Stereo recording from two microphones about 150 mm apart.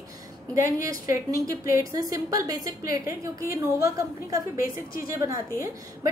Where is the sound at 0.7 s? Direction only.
20° right (ahead or behind).